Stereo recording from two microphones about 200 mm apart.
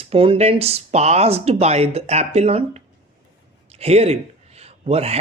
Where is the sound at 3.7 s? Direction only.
30° right (ahead or behind).